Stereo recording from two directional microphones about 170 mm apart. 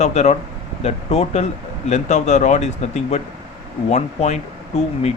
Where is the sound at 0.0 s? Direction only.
40° left (ahead or behind).